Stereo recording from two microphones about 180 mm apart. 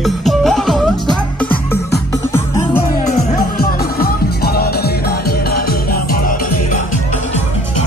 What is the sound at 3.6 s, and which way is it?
Music, 60° left (ahead or behind).